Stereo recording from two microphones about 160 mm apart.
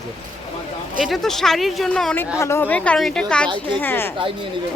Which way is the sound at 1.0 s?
Centre (ahead or behind).